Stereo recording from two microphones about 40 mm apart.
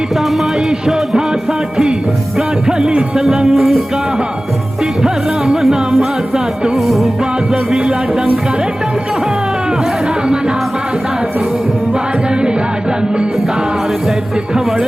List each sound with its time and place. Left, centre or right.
0.7 s music: centre
2.6 s music: centre
7.7 s music: centre
12.3 s music: right